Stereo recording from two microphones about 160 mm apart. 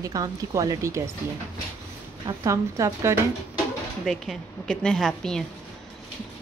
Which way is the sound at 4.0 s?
Centre (ahead or behind).